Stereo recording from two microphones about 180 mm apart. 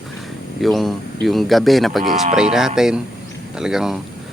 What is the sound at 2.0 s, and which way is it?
Speech, 50° right (ahead or behind).